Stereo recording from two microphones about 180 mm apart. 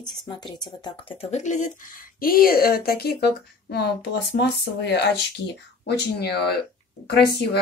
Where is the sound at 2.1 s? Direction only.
55° left (ahead or behind).